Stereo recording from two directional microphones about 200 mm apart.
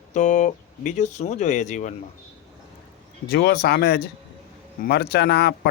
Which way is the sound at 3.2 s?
50° left (ahead or behind).